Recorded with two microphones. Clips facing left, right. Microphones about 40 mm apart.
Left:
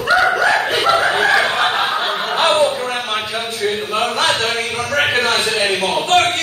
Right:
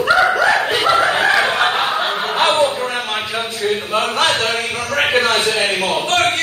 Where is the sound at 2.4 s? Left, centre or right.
Centre.